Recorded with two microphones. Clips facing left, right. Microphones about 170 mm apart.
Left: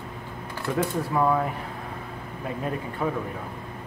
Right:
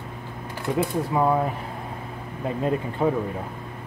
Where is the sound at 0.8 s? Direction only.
20° right (ahead or behind).